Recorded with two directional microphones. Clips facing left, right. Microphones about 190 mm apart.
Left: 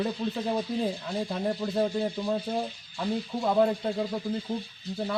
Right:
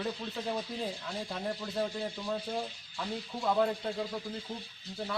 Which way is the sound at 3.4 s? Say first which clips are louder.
Left 5 dB; 30° left (ahead or behind).